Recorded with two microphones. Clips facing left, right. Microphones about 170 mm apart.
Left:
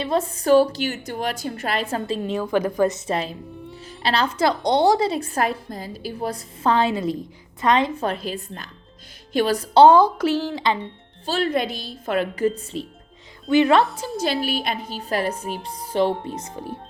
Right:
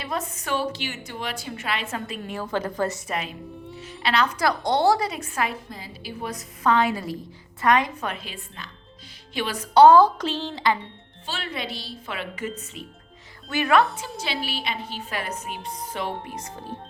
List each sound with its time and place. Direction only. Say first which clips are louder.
0.0 s a woman's voice: left 8 dB; 30° left (ahead or behind)
3.1 s a woman's voice: left 5 dB; 35° left (ahead or behind); by 10.6 s 10° left (ahead or behind)
11.3 s a woman's voice: left 10 dB; 45° left (ahead or behind)
13.5 s a woman's voice: left 5 dB; 20° left (ahead or behind)
13.9 s a woman's voice: left 7 dB; 40° left (ahead or behind); by 16.5 s 25° left (ahead or behind)